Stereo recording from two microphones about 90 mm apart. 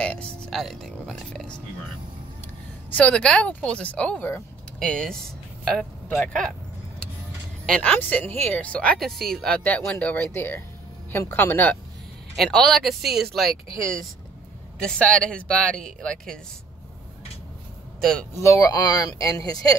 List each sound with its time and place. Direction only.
0.0 s music: 10° left (ahead or behind)
0.6 s speech: centre (ahead or behind)
2.9 s speech: 15° left (ahead or behind)
7.6 s speech: 10° left (ahead or behind)
9.0 s speech: centre (ahead or behind)
9.6 s speech: 20° left (ahead or behind)
12.4 s speech: 5° left (ahead or behind)
14.8 s speech: 10° left (ahead or behind)
18.3 s speech: 30° left (ahead or behind)
18.7 s speech: 45° left (ahead or behind)